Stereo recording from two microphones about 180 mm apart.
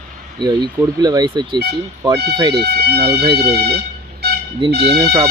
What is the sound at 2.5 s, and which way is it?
Speech, 65° right (ahead or behind).